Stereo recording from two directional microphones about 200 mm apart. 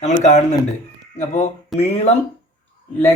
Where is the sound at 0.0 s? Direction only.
35° left (ahead or behind).